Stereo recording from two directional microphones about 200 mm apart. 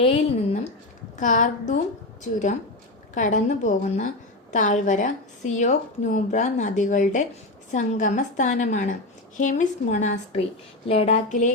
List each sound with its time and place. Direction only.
0.0 s a woman's voice: 30° left (ahead or behind)
3.2 s a woman's voice: 40° left (ahead or behind)